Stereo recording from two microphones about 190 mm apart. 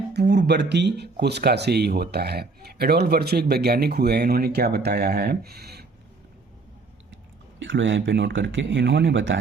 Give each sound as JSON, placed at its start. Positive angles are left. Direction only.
{"t": 0.1, "sound": "speech", "side_deg": -60}
{"t": 7.6, "sound": "speech", "side_deg": -75}